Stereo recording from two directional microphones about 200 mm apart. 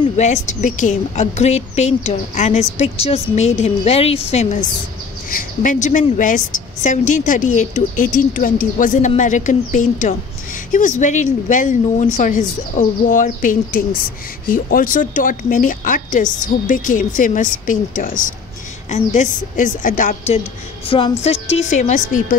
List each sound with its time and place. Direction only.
0.0 s a woman's voice: 35° left (ahead or behind)
20.9 s music: 30° left (ahead or behind)
21.5 s a woman's voice: 35° left (ahead or behind)